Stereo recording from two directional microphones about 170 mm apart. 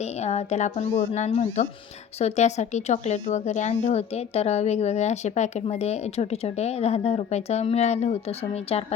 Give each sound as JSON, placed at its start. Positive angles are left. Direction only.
{"t": 0.0, "sound": "a woman's voice", "side_deg": 40}